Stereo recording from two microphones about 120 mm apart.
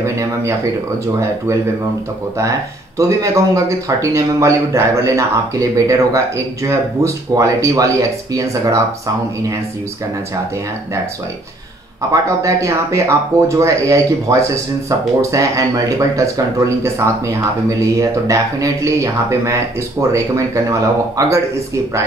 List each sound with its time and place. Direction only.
0.0 s speech: 25° right (ahead or behind)
3.0 s speech: 25° right (ahead or behind)
12.1 s speech: 25° right (ahead or behind)